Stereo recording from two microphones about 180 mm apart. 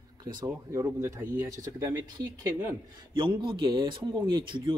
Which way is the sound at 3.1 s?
25° right (ahead or behind).